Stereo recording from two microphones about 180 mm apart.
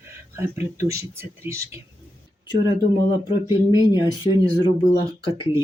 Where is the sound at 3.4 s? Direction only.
20° right (ahead or behind).